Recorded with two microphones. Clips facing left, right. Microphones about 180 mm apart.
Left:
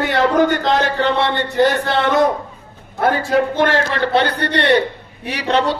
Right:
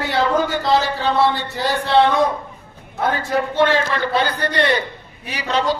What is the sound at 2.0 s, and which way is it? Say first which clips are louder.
Speech: right 1 dB; 75° left (ahead or behind).